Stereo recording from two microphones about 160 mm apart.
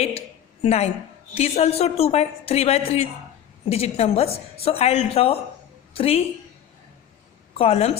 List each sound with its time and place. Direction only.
0.6 s a woman's voice: 40° left (ahead or behind)
7.6 s speech: 40° left (ahead or behind)